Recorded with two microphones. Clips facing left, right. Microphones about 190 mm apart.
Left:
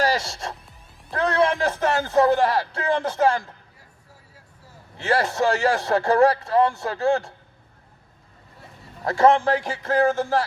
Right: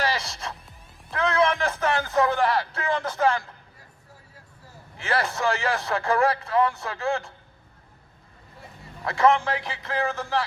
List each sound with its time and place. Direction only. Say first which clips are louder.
0.0 s music: left 5 dB; 45° left (ahead or behind)
1.1 s speech: left 2 dB; 35° left (ahead or behind)
5.0 s a man's voice: left 4 dB; 40° left (ahead or behind)
9.0 s a man's voice: left 4 dB; 40° left (ahead or behind)